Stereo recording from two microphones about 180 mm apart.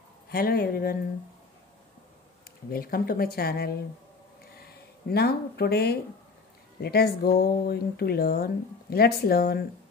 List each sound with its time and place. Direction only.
0.3 s speech: 55° left (ahead or behind)
2.7 s speech: 55° left (ahead or behind)